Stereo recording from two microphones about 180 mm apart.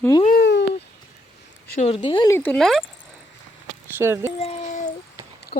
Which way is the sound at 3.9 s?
15° right (ahead or behind).